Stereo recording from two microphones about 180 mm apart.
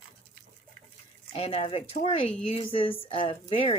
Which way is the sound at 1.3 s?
35° left (ahead or behind).